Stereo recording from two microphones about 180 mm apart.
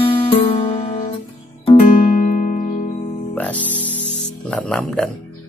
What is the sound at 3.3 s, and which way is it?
Music, 10° left (ahead or behind).